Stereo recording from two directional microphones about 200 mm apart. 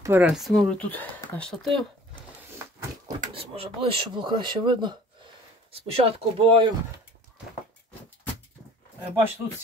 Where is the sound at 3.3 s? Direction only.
30° right (ahead or behind).